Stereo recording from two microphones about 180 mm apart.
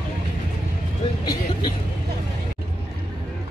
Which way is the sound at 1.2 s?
25° left (ahead or behind).